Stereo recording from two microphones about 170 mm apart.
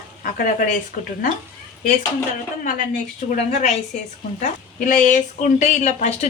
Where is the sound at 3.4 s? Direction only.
40° left (ahead or behind).